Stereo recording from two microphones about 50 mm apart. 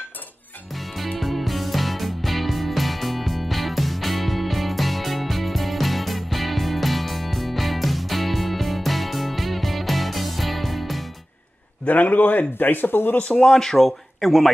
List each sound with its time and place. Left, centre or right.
0.7 s music: centre
11.8 s speech: left
13.4 s speech: centre